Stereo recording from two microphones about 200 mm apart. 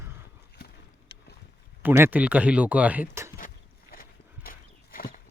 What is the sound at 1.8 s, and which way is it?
Speech, 10° right (ahead or behind).